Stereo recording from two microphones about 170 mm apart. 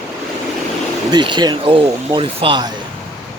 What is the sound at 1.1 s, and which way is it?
Speech, 25° right (ahead or behind).